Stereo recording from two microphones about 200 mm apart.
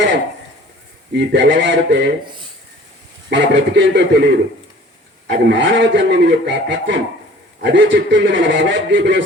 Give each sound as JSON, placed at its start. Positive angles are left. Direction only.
{"t": 1.1, "sound": "a man's voice", "side_deg": -60}
{"t": 3.2, "sound": "a man's voice", "side_deg": -60}